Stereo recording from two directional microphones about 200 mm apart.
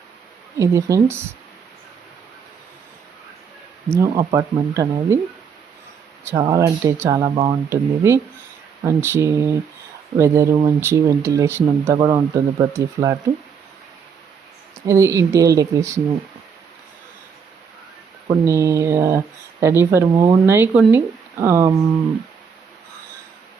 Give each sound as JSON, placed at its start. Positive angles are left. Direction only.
{"t": 0.6, "sound": "speech", "side_deg": -15}
{"t": 3.9, "sound": "speech", "side_deg": -15}
{"t": 6.4, "sound": "speech", "side_deg": -15}
{"t": 14.8, "sound": "speech", "side_deg": -15}
{"t": 18.3, "sound": "speech", "side_deg": -15}